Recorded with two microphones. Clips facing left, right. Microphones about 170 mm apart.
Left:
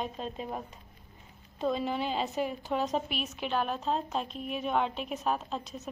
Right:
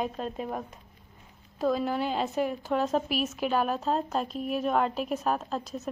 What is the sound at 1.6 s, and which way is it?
A woman's voice, 5° right (ahead or behind).